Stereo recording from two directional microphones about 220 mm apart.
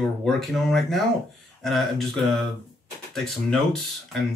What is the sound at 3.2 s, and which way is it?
Speech, centre (ahead or behind).